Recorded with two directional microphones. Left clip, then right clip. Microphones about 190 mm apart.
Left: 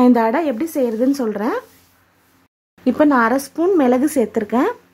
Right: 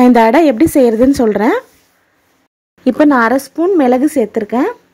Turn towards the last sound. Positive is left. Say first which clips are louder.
# right 3 dB
turn(degrees=-20)  # may be behind; listen again after turning